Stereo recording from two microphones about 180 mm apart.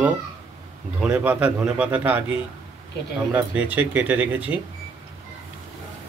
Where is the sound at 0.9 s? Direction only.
5° right (ahead or behind).